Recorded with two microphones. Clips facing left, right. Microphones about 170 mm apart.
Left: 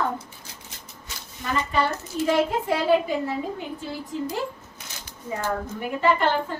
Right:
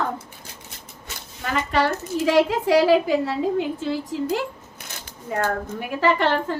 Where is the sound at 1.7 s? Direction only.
80° right.